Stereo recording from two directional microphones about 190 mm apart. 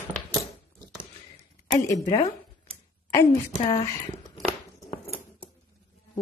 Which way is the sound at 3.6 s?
30° left (ahead or behind).